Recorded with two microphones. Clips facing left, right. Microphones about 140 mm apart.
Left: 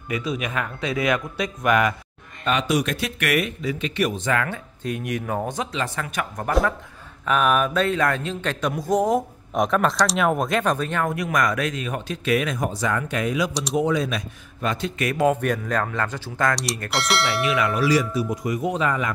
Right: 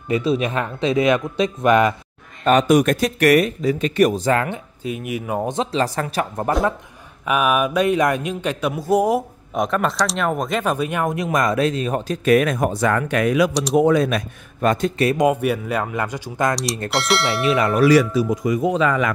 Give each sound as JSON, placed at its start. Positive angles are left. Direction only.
{"t": 0.1, "sound": "speech", "side_deg": -30}
{"t": 2.4, "sound": "speech", "side_deg": -45}
{"t": 4.8, "sound": "speech", "side_deg": -5}
{"t": 5.5, "sound": "speech", "side_deg": -30}
{"t": 7.2, "sound": "speech", "side_deg": -10}
{"t": 13.5, "sound": "speech", "side_deg": 0}
{"t": 13.7, "sound": "speech", "side_deg": -55}
{"t": 15.1, "sound": "speech", "side_deg": -10}
{"t": 16.9, "sound": "speech", "side_deg": 0}
{"t": 17.4, "sound": "speech", "side_deg": -30}
{"t": 17.7, "sound": "speech", "side_deg": -65}